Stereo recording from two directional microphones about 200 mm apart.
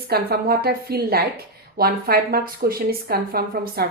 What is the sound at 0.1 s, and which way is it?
A woman's voice, 50° right (ahead or behind).